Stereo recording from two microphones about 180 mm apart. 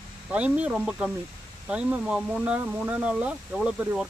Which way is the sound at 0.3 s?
5° right (ahead or behind).